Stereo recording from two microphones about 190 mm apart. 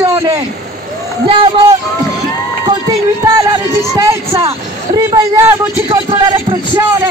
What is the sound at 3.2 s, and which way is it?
A man's voice, 15° right (ahead or behind).